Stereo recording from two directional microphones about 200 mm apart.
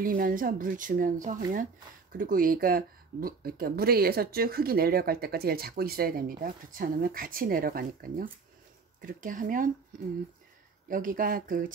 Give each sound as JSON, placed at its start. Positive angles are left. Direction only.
{"t": 0.0, "sound": "speech", "side_deg": -45}
{"t": 10.9, "sound": "speech", "side_deg": -45}